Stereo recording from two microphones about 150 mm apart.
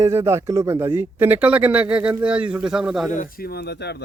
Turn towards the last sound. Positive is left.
turn(degrees=90)